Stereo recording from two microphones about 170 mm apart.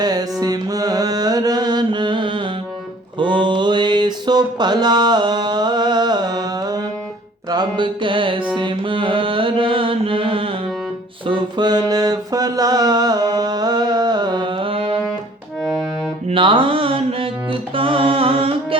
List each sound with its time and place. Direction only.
0.0 s music: 25° right (ahead or behind)
3.2 s mantra: 30° right (ahead or behind)
7.5 s music: 25° right (ahead or behind)
8.5 s mantra: 30° right (ahead or behind)
11.3 s a sound: 25° right (ahead or behind)
16.3 s mantra: 30° right (ahead or behind)
17.7 s music: 30° right (ahead or behind)